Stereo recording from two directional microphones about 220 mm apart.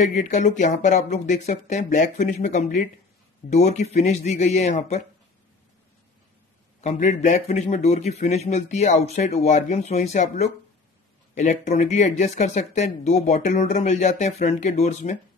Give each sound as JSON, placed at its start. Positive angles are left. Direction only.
{"t": 0.0, "sound": "speech", "side_deg": 35}
{"t": 6.8, "sound": "speech", "side_deg": 30}